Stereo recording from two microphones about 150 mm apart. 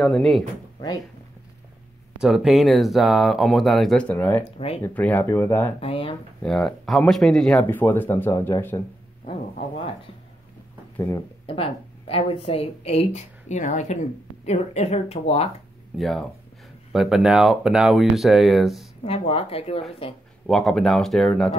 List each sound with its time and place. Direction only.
0.0 s speech: 5° left (ahead or behind)
2.1 s speech: 5° right (ahead or behind); by 5.8 s 15° left (ahead or behind)
5.8 s a woman's voice: 40° left (ahead or behind)
6.4 s speech: 5° left (ahead or behind)
7.6 s speech: 15° left (ahead or behind)
11.0 s speech: 20° left (ahead or behind)
11.4 s a woman's voice: 40° left (ahead or behind)
16.0 s speech: centre (ahead or behind)
19.0 s a woman's voice: 40° left (ahead or behind)
20.4 s speech: centre (ahead or behind)